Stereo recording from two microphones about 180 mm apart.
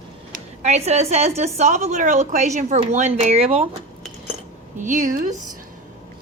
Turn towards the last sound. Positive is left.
turn(degrees=-50)  # may be behind; listen again after turning